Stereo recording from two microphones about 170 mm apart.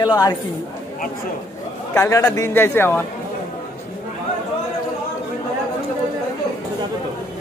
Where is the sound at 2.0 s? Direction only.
20° left (ahead or behind).